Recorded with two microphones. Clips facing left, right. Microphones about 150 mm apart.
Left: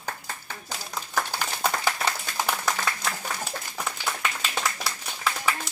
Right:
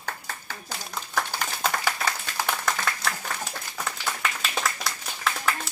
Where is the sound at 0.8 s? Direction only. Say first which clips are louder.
Even; 5° left (ahead or behind).